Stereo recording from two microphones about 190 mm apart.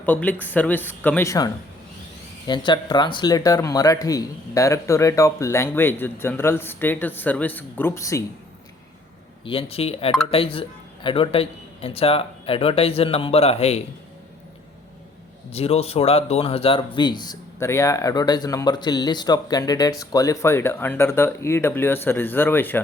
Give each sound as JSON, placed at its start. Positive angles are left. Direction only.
{"t": 0.0, "sound": "speech", "side_deg": 10}
{"t": 2.5, "sound": "speech", "side_deg": 25}
{"t": 9.4, "sound": "speech", "side_deg": 30}
{"t": 15.5, "sound": "speech", "side_deg": 30}